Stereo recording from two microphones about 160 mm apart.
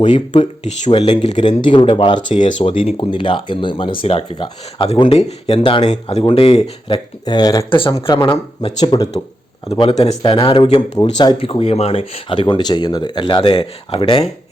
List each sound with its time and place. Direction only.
0.1 s speech: 40° left (ahead or behind)
1.4 s speech: 30° left (ahead or behind)
9.6 s speech: 35° left (ahead or behind)
10.9 s speech: 25° left (ahead or behind)